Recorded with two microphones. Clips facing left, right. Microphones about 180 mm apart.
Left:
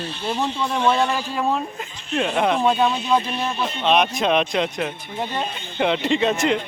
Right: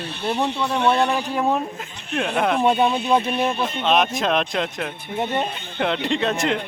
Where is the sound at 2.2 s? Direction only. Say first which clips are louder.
Left 1 dB; centre (ahead or behind).